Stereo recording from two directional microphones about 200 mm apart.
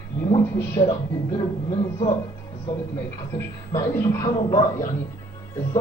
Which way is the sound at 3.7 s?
15° left (ahead or behind).